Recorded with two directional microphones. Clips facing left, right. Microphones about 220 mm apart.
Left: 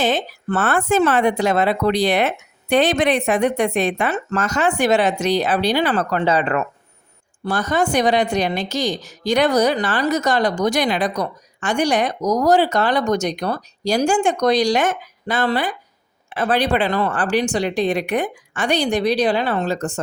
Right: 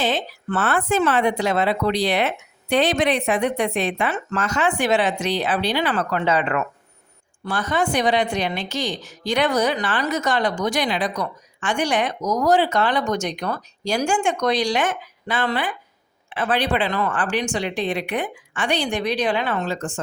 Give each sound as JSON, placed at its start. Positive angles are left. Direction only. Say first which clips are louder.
{"t": 0.0, "sound": "a woman's voice", "louder": "left 3 dB", "side_deg": 45}